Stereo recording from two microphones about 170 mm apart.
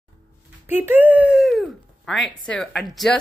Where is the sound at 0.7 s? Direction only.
10° right (ahead or behind).